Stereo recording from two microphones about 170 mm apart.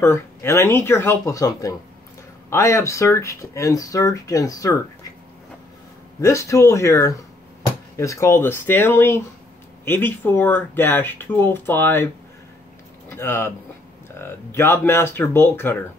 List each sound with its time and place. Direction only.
0.0 s speech: 15° left (ahead or behind)
6.2 s speech: 15° left (ahead or behind)
13.1 s speech: 15° left (ahead or behind)